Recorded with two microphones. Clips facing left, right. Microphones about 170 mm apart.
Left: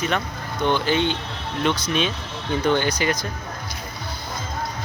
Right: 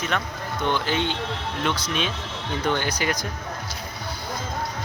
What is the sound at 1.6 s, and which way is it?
Speech, centre (ahead or behind).